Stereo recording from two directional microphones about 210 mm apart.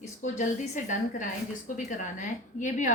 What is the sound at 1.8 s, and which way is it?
A woman's voice, 35° left (ahead or behind).